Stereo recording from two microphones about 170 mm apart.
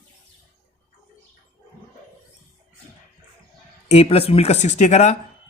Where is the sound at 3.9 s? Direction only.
35° left (ahead or behind).